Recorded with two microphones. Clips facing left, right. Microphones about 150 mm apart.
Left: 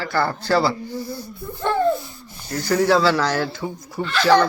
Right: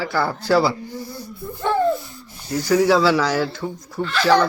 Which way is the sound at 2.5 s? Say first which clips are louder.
Right 2 dB; 5° right (ahead or behind).